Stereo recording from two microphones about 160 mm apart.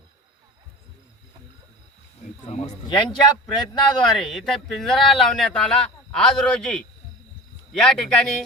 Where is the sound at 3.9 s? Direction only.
Centre (ahead or behind).